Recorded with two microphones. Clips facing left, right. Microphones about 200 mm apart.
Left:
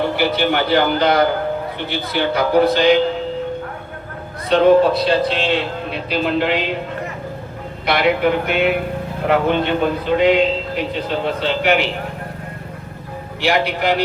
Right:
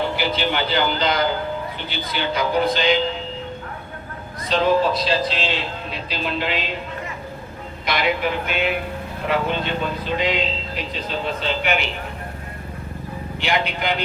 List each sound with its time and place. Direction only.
0.2 s speech: 60° left (ahead or behind)
4.4 s speech: 60° left (ahead or behind)
7.9 s speech: 60° left (ahead or behind)
13.5 s speech: 65° left (ahead or behind)